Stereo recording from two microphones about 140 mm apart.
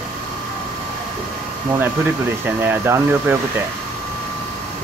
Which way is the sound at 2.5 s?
15° right (ahead or behind).